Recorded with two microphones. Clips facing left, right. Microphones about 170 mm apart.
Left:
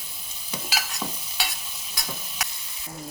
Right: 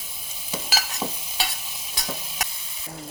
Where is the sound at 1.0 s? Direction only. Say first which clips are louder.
Right 3 dB; 25° right (ahead or behind).